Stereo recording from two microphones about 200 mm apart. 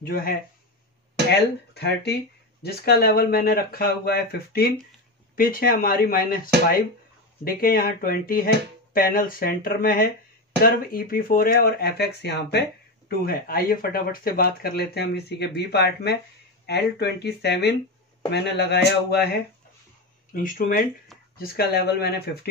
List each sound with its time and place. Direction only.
0.0 s speech: 50° left (ahead or behind)
1.7 s speech: 55° left (ahead or behind)
20.3 s speech: 45° left (ahead or behind)